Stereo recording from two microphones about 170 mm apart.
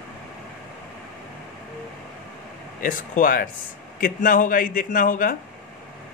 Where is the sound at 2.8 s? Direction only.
55° left (ahead or behind).